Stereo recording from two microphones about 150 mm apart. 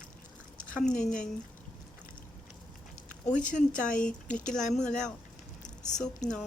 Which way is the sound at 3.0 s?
55° left (ahead or behind).